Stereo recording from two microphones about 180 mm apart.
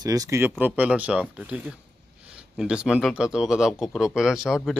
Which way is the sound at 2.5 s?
5° right (ahead or behind).